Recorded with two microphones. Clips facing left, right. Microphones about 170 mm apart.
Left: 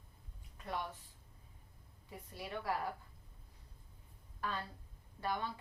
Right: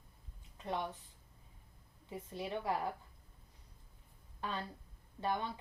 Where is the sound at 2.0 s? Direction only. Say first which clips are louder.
Right 5 dB; 20° right (ahead or behind).